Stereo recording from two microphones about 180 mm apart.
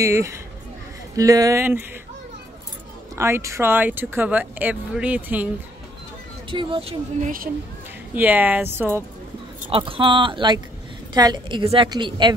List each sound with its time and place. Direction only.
0.0 s a woman's voice: 15° right (ahead or behind)
3.2 s speech: 15° right (ahead or behind)
6.5 s speech: 30° right (ahead or behind)
7.2 s speech: 50° right (ahead or behind)
8.1 s speech: 10° right (ahead or behind)
9.7 s a woman's voice: 30° right (ahead or behind)